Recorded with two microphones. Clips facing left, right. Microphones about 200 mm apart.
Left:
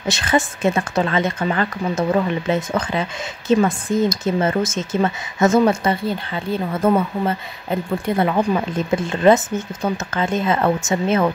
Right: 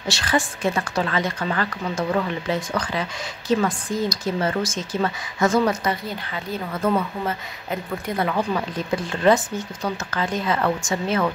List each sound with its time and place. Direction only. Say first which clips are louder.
0.1 s a woman's voice: left 4 dB; 20° left (ahead or behind)